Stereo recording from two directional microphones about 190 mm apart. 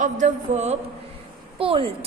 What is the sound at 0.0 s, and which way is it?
A woman's voice, 40° right (ahead or behind).